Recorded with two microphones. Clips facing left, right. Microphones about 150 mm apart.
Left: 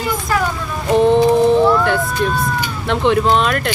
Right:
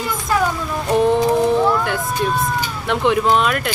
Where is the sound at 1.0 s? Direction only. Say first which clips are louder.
Left 5 dB; 25° left (ahead or behind).